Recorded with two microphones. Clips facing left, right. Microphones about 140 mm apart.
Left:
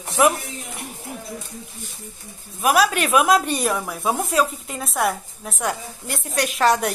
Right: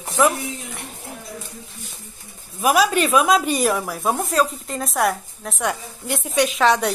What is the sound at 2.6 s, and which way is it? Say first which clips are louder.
Speech: right 1 dB; centre (ahead or behind).